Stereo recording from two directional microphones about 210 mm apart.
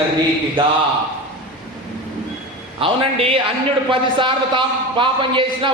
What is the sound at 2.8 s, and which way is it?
A man's voice, 25° right (ahead or behind).